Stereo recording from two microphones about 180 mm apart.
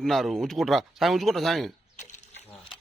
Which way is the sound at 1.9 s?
40° left (ahead or behind).